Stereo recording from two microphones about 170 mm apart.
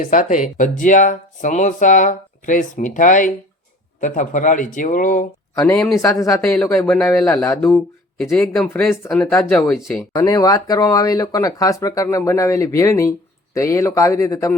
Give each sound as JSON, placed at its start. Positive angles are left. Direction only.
{"t": 0.0, "sound": "speech", "side_deg": 50}
{"t": 6.0, "sound": "speech", "side_deg": 20}
{"t": 6.6, "sound": "speech", "side_deg": 5}
{"t": 7.4, "sound": "speech", "side_deg": 15}
{"t": 8.2, "sound": "speech", "side_deg": 5}
{"t": 10.2, "sound": "speech", "side_deg": 20}